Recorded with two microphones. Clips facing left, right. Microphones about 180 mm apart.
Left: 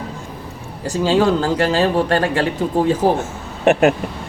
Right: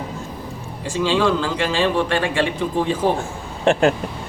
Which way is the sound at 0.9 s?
40° left (ahead or behind).